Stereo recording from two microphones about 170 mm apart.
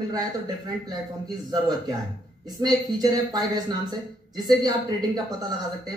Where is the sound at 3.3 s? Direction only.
20° right (ahead or behind).